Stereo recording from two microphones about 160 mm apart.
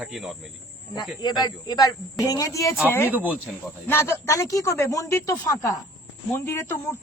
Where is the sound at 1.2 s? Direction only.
25° left (ahead or behind).